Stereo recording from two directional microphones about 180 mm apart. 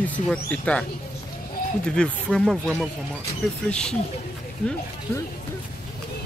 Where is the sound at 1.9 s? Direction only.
5° left (ahead or behind).